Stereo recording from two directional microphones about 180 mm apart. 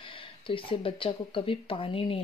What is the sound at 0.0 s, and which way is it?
Speech, 30° left (ahead or behind).